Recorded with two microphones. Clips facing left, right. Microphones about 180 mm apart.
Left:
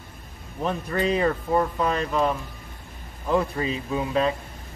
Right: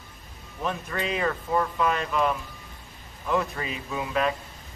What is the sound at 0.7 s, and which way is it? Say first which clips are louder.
A man's voice: left 5 dB; 35° left (ahead or behind).